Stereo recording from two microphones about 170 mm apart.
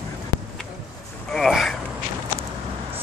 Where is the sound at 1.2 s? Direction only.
Centre (ahead or behind).